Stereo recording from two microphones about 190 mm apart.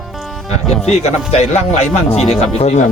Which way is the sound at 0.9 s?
35° left (ahead or behind).